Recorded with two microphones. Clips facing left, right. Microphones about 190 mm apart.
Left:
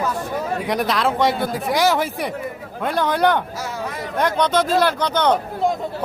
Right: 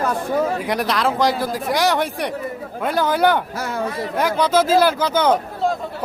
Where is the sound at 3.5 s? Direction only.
60° right (ahead or behind).